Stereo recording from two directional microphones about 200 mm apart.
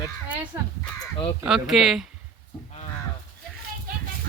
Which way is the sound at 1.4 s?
Centre (ahead or behind).